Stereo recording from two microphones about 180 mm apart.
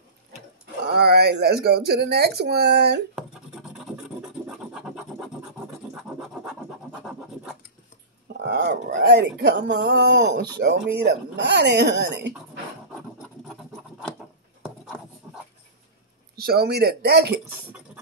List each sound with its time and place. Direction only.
0.8 s speech: 60° right (ahead or behind)
3.2 s scratch: 5° right (ahead or behind)
8.3 s speech: 70° right (ahead or behind)
15.2 s dog: 10° right (ahead or behind)
16.3 s speech: 60° right (ahead or behind)